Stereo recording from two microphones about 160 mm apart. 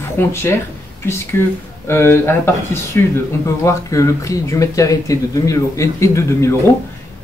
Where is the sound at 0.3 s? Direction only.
15° left (ahead or behind).